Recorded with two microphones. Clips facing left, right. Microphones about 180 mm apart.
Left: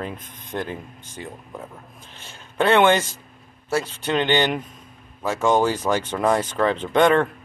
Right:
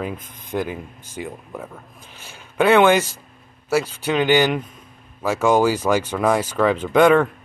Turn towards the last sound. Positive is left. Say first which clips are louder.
# right 3 dB
turn(degrees=-5)  # may be behind; listen again after turning